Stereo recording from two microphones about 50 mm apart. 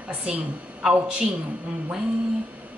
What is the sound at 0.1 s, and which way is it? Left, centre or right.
Speech, right.